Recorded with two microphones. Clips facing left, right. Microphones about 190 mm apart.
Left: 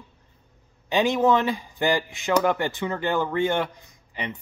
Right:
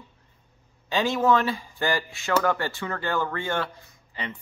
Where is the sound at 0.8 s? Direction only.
20° left (ahead or behind).